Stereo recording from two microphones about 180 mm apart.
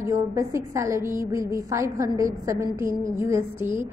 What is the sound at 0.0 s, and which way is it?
A woman's voice, 15° right (ahead or behind).